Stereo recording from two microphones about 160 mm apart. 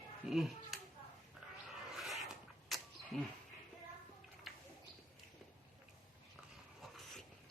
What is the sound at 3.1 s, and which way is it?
Speech, centre (ahead or behind).